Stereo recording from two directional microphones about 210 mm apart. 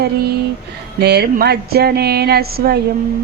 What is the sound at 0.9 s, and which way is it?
A woman's voice, 50° right (ahead or behind).